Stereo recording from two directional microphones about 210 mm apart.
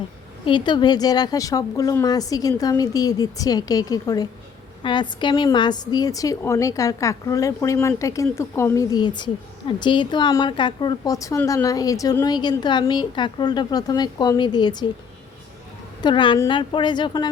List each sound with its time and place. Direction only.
0.4 s a woman's voice: 20° left (ahead or behind)
16.0 s a woman's voice: 20° left (ahead or behind)